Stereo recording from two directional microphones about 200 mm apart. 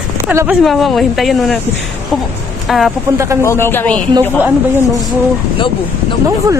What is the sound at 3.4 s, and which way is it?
Speech, 10° left (ahead or behind).